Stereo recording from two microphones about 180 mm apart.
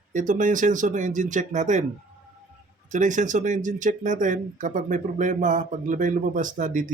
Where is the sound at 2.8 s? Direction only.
45° right (ahead or behind).